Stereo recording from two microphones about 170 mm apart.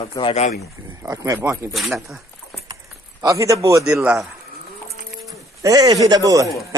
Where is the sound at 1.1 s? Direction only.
20° right (ahead or behind).